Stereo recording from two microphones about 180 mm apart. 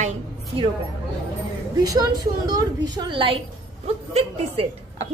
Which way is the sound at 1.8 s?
20° right (ahead or behind).